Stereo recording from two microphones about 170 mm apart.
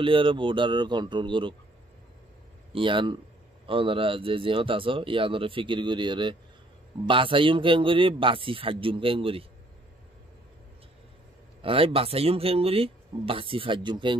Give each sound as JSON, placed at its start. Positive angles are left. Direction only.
{"t": 0.0, "sound": "speech", "side_deg": -30}
{"t": 2.7, "sound": "speech", "side_deg": -30}
{"t": 11.6, "sound": "speech", "side_deg": -35}